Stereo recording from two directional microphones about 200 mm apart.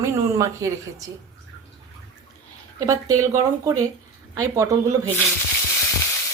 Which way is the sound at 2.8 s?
15° right (ahead or behind).